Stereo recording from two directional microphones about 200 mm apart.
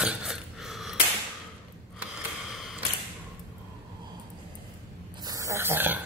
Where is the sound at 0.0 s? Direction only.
5° right (ahead or behind).